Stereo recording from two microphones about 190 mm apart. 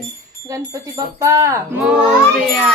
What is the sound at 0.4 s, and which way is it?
Speech, 15° right (ahead or behind).